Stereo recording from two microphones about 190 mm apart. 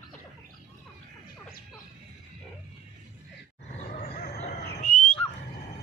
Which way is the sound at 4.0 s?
35° left (ahead or behind).